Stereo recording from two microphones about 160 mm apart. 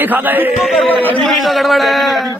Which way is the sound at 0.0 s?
10° right (ahead or behind).